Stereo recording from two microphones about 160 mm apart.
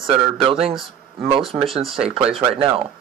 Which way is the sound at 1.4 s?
Centre (ahead or behind).